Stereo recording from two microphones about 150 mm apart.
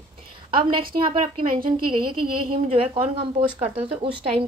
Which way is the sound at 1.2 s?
55° right (ahead or behind).